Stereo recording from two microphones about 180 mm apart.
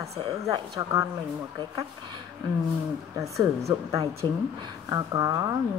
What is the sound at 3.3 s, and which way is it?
Speech, 15° right (ahead or behind).